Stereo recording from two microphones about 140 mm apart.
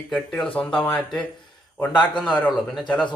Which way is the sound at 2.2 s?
5° left (ahead or behind).